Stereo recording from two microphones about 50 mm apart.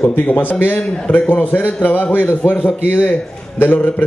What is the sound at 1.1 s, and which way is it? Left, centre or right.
Speech, left.